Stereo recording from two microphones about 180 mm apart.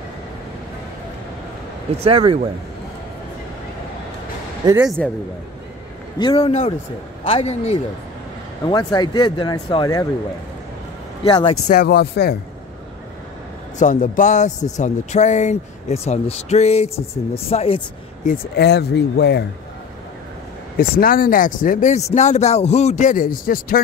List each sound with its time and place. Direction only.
2.0 s speech: 30° right (ahead or behind)
4.7 s speech: centre (ahead or behind)
6.1 s a man's voice: 30° left (ahead or behind)
11.2 s a man's voice: 30° left (ahead or behind)
11.8 s speech: 65° left (ahead or behind)
13.7 s a man's voice: 45° left (ahead or behind)
18.2 s speech: 55° left (ahead or behind); by 19.4 s 70° left (ahead or behind)
20.7 s a man's voice: 55° left (ahead or behind)